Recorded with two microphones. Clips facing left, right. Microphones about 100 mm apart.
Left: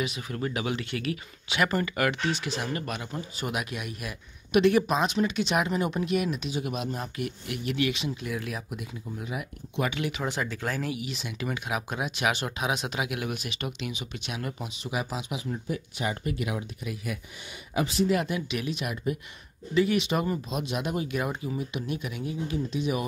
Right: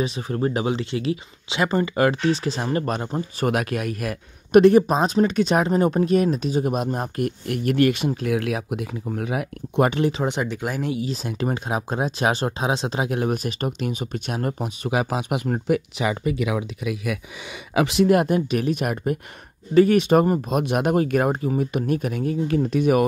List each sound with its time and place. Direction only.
0.0 s speech: 35° right (ahead or behind); by 8.3 s 55° right (ahead or behind)
8.3 s speech: 80° right; by 10.0 s 50° right (ahead or behind)
10.0 s speech: 25° right (ahead or behind); by 18.1 s 85° right
18.1 s speech: 50° right (ahead or behind)